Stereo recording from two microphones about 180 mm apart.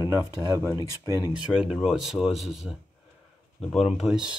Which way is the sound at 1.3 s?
5° right (ahead or behind).